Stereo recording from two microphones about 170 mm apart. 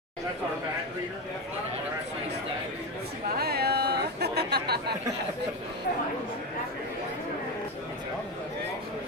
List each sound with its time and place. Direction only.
3.3 s chatter: 70° right (ahead or behind)